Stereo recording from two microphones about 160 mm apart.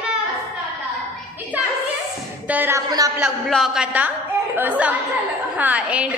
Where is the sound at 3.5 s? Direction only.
5° right (ahead or behind).